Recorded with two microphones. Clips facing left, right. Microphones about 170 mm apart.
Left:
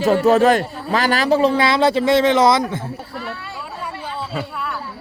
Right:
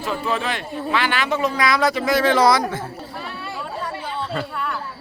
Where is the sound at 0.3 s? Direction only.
45° left (ahead or behind); by 2.8 s 25° left (ahead or behind).